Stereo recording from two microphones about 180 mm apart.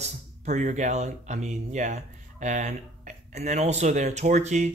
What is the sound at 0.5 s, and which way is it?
Speech, 40° right (ahead or behind).